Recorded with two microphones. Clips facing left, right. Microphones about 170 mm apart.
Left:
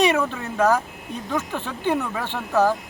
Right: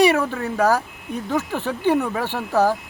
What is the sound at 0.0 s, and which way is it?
Speech, 10° right (ahead or behind).